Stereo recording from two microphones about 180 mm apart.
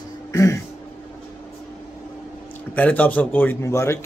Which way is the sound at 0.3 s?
15° left (ahead or behind).